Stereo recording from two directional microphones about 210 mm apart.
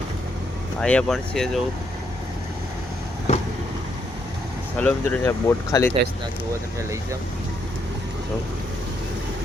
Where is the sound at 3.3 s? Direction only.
35° left (ahead or behind).